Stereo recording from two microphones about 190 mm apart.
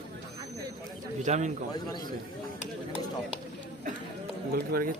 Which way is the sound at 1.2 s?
40° right (ahead or behind).